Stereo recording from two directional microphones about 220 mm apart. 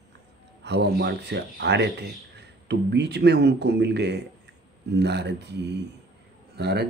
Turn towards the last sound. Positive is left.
turn(degrees=-50)  # may be behind; listen again after turning